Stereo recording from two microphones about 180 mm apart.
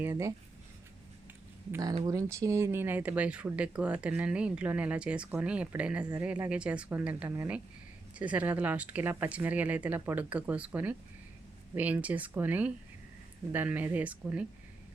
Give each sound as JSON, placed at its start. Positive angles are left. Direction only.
{"t": 0.0, "sound": "speech", "side_deg": -15}
{"t": 1.7, "sound": "speech", "side_deg": -20}